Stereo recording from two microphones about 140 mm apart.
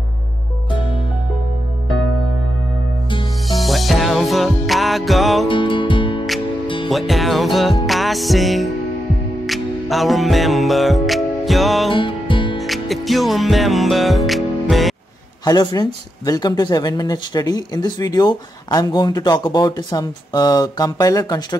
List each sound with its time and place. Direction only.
3.4 s music: centre (ahead or behind)
5.5 s music: 35° left (ahead or behind)
6.9 s music: centre (ahead or behind)
11.9 s music: 35° left (ahead or behind)
12.5 s music: centre (ahead or behind)
15.4 s speech: 30° left (ahead or behind)